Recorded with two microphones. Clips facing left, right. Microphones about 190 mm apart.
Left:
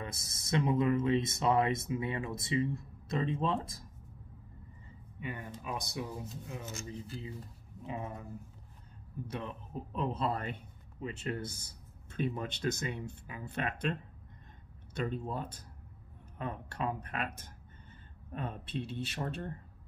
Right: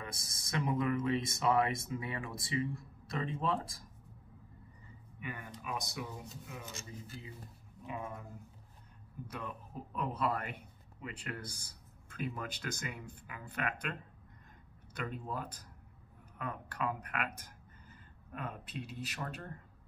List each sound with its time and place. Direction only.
0.0 s speech: 25° left (ahead or behind)
5.2 s speech: 25° left (ahead or behind)
7.8 s speech: 30° left (ahead or behind)
9.3 s speech: 25° left (ahead or behind)
15.0 s speech: 25° left (ahead or behind)